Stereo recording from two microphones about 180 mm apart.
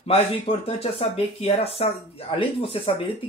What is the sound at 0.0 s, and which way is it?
Speech, 35° left (ahead or behind).